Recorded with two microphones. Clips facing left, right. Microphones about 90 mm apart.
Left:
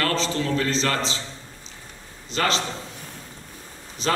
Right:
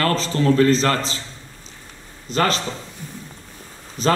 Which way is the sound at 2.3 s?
45° right (ahead or behind).